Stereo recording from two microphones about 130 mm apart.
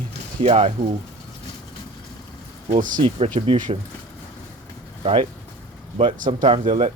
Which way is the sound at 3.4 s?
45° right (ahead or behind).